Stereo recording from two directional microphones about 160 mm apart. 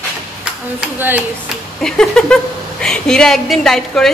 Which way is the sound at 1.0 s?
10° right (ahead or behind).